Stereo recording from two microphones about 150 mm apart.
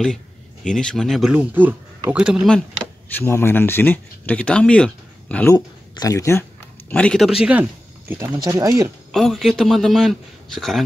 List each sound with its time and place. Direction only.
0.7 s speech: 5° left (ahead or behind)
3.2 s speech: 15° left (ahead or behind)
5.5 s speech: 20° left (ahead or behind)
6.9 s speech: 5° left (ahead or behind)
8.1 s speech: 20° right (ahead or behind)
9.1 s speech: centre (ahead or behind)